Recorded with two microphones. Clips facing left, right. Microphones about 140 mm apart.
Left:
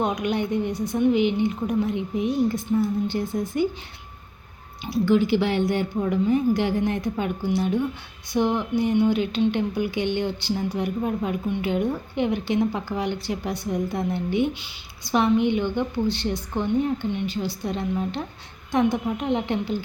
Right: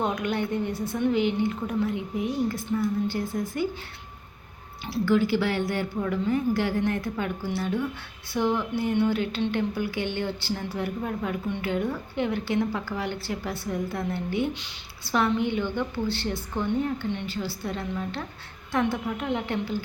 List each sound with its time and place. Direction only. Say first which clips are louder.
0.0 s a woman's voice: left 3 dB; 15° left (ahead or behind)
4.9 s a woman's voice: left 3 dB; 20° left (ahead or behind)